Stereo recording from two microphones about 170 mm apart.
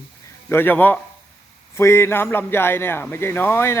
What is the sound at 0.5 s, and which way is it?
Speech, 10° left (ahead or behind).